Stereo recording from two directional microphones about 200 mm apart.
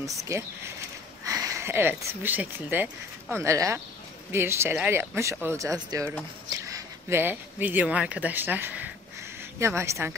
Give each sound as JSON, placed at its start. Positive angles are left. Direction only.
{"t": 0.0, "sound": "speech", "side_deg": -15}